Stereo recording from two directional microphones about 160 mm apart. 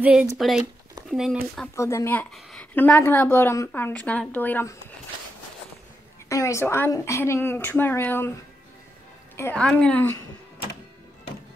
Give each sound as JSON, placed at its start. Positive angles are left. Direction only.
{"t": 0.0, "sound": "speech", "side_deg": -10}
{"t": 1.8, "sound": "a woman's voice", "side_deg": 20}
{"t": 6.2, "sound": "a woman's voice", "side_deg": 20}
{"t": 9.4, "sound": "a woman's voice", "side_deg": 10}